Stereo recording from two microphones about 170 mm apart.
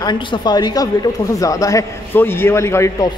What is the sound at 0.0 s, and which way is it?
A man's voice, 25° left (ahead or behind).